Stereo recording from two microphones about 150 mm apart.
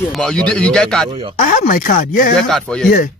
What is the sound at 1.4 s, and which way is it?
Speech, 60° left (ahead or behind).